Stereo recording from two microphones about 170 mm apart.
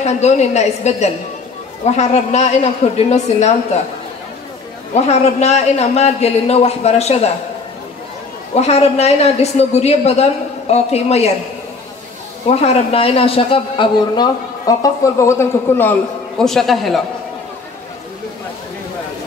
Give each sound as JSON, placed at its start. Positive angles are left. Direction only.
{"t": 0.0, "sound": "a woman's voice", "side_deg": 40}
{"t": 4.9, "sound": "a woman's voice", "side_deg": 40}
{"t": 8.5, "sound": "a woman's voice", "side_deg": 40}
{"t": 12.4, "sound": "a man's voice", "side_deg": 35}